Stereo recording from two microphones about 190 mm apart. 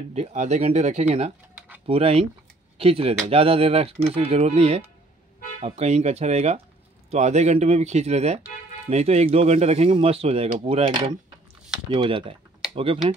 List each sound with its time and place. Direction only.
0.1 s speech: 35° right (ahead or behind)